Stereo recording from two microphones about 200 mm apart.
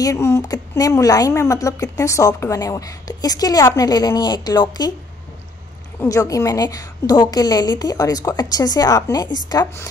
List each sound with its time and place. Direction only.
0.0 s a woman's voice: 15° left (ahead or behind)
5.9 s a woman's voice: 15° left (ahead or behind)